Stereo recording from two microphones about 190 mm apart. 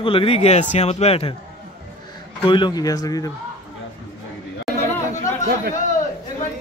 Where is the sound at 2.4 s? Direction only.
25° left (ahead or behind).